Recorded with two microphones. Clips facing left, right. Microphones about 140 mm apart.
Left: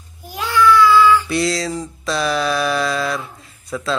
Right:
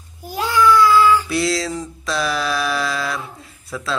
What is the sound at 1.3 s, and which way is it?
Speech, centre (ahead or behind).